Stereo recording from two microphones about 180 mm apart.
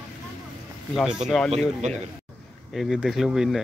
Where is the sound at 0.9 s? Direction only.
5° right (ahead or behind).